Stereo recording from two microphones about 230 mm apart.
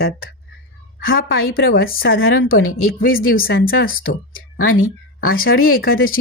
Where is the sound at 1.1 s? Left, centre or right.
Left.